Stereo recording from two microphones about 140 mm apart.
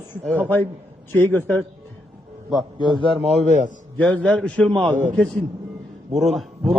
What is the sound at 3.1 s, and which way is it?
Speech, 50° right (ahead or behind).